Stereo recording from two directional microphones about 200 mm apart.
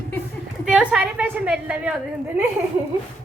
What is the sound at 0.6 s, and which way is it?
A woman's voice, 5° right (ahead or behind).